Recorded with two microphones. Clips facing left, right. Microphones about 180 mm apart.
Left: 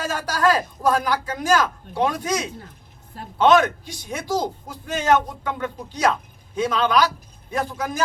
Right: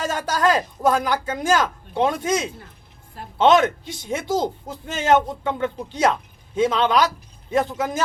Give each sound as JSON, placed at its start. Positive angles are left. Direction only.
{"t": 0.0, "sound": "a man's voice", "side_deg": -25}